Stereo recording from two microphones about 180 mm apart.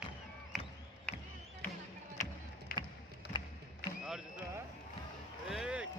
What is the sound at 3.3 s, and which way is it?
Music, 25° left (ahead or behind).